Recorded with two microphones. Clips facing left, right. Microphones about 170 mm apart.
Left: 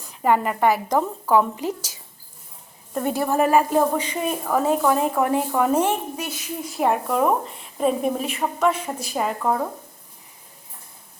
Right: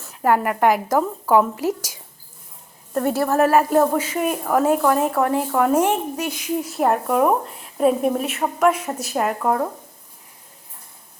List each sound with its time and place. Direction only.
0.0 s a woman's voice: 5° right (ahead or behind)
5.7 s a woman's voice: 10° right (ahead or behind)
6.7 s a woman's voice: centre (ahead or behind)